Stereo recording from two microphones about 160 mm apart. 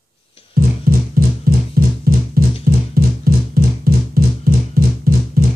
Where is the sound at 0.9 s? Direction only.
70° right (ahead or behind).